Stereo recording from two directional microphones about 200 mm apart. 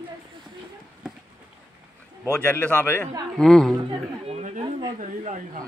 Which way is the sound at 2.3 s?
10° left (ahead or behind).